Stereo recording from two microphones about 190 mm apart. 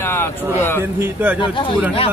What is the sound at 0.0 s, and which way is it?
Speech, 10° left (ahead or behind).